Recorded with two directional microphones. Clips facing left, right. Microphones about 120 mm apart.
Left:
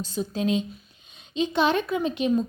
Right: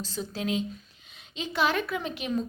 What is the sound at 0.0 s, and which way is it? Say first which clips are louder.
Speech: left 6 dB; 15° left (ahead or behind).